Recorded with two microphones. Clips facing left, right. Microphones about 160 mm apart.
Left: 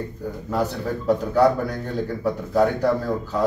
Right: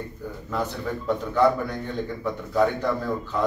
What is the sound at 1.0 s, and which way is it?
A man's voice, 35° left (ahead or behind).